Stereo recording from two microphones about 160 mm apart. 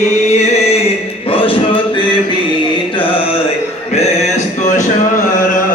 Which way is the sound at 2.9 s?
35° left (ahead or behind).